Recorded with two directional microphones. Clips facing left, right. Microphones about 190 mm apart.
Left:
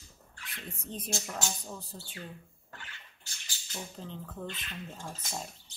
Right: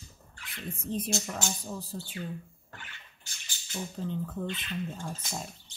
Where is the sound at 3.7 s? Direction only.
5° right (ahead or behind).